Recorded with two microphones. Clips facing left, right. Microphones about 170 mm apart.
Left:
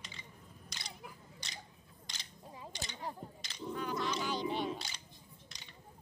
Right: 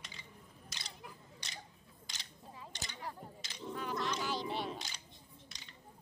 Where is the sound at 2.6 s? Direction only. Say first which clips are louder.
Left 3 dB; 25° left (ahead or behind).